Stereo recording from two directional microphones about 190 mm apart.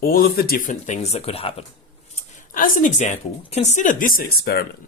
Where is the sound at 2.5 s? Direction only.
45° left (ahead or behind).